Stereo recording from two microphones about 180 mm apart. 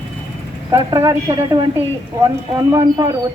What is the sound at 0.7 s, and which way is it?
Speech, 15° right (ahead or behind).